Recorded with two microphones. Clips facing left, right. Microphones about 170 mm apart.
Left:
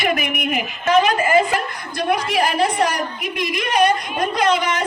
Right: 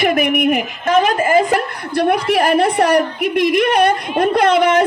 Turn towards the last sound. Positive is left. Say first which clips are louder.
# right 6 dB
turn(degrees=-55)  # may be behind; listen again after turning